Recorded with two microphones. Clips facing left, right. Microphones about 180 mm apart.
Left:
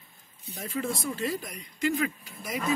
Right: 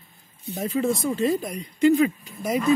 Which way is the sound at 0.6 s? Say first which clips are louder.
Right 8 dB; 20° right (ahead or behind).